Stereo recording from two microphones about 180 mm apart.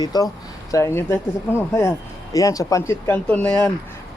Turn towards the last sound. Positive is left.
turn(degrees=10)  # may be behind; listen again after turning